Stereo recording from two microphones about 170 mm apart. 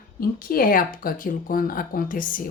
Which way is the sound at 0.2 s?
60° left (ahead or behind).